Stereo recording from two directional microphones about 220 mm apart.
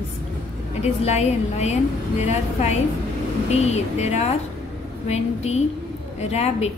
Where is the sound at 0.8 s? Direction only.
30° left (ahead or behind).